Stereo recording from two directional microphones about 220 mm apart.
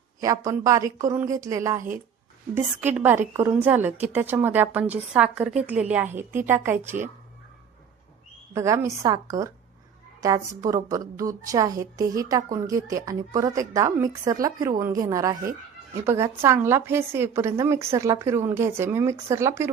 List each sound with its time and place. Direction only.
0.2 s a woman's voice: 15° right (ahead or behind)
8.5 s a woman's voice: 15° right (ahead or behind)